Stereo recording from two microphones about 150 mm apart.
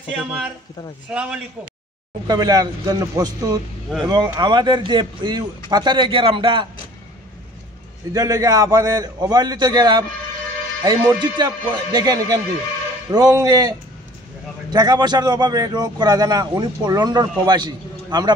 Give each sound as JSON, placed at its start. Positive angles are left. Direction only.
{"t": 0.2, "sound": "a man's voice", "side_deg": -5}
{"t": 2.2, "sound": "a man's voice", "side_deg": -25}
{"t": 8.1, "sound": "a man's voice", "side_deg": -25}